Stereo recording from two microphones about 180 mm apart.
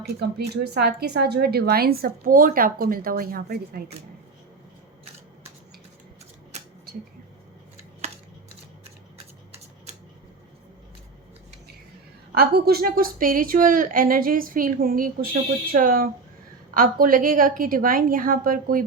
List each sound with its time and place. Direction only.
0.0 s speech: 60° right (ahead or behind)
12.3 s a woman's voice: 60° right (ahead or behind)